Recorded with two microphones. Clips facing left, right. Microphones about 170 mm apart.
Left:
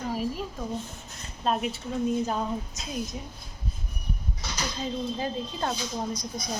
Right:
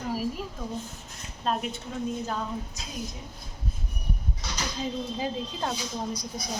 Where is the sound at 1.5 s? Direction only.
Centre (ahead or behind).